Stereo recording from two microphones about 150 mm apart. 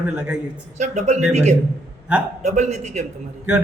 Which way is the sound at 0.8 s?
50° right (ahead or behind).